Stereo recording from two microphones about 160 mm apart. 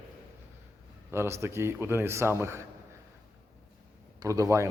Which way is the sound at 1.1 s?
15° right (ahead or behind).